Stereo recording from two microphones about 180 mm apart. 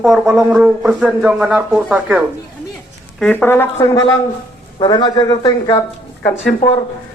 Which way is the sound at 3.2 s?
10° left (ahead or behind).